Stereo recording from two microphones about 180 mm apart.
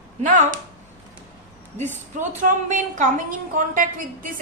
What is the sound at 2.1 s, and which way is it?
Speech, 45° right (ahead or behind).